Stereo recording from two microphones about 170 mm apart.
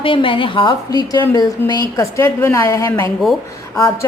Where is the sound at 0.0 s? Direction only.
30° left (ahead or behind).